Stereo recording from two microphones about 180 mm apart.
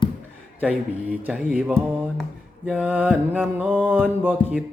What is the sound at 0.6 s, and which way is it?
Mantra, 10° right (ahead or behind).